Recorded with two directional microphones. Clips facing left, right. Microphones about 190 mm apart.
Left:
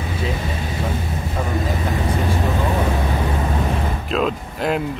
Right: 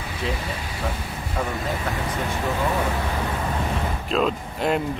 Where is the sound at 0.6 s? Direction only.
20° left (ahead or behind).